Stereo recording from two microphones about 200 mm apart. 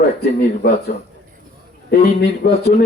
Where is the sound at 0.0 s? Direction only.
50° left (ahead or behind).